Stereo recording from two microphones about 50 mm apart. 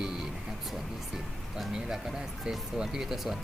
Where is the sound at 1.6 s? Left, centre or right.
Centre.